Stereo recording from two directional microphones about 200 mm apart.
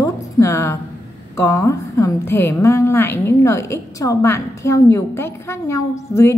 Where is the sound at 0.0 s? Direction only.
15° left (ahead or behind).